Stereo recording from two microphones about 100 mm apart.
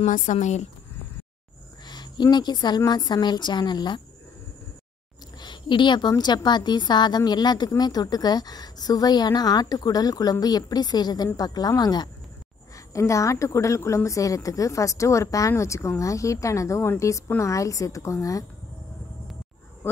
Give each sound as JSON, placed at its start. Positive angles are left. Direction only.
{"t": 1.9, "sound": "cricket", "side_deg": 45}
{"t": 2.3, "sound": "a woman's voice", "side_deg": 45}
{"t": 5.4, "sound": "a woman's voice", "side_deg": 50}
{"t": 12.7, "sound": "speech", "side_deg": 30}